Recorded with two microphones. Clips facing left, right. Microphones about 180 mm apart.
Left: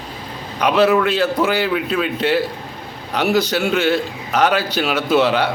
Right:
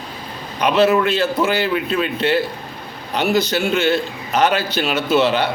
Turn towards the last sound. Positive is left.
turn(degrees=10)  # may be behind; listen again after turning